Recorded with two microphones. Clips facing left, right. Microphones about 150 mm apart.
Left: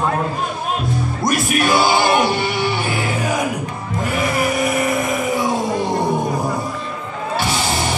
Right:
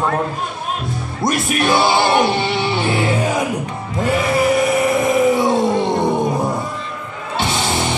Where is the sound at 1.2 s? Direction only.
25° right (ahead or behind).